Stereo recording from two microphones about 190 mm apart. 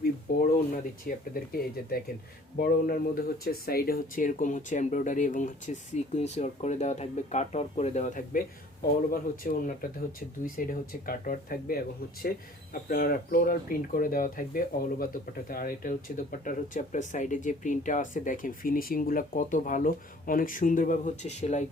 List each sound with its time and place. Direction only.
0.5 s speech: 45° left (ahead or behind)